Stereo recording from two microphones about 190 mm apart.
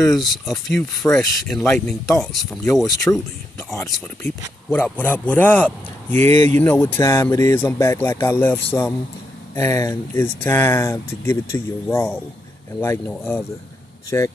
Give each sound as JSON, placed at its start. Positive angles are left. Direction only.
{"t": 0.0, "sound": "speech", "side_deg": 0}
{"t": 3.1, "sound": "speech", "side_deg": 15}
{"t": 9.6, "sound": "speech", "side_deg": 15}